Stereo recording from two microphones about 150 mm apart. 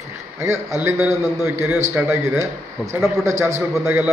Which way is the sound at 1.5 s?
15° right (ahead or behind).